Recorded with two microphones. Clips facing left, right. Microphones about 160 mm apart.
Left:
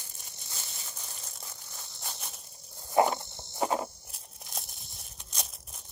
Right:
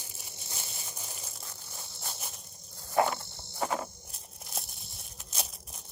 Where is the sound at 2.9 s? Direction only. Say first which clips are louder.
Left 3 dB; 20° left (ahead or behind).